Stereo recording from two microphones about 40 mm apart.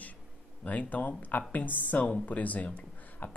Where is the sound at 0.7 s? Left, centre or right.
Left.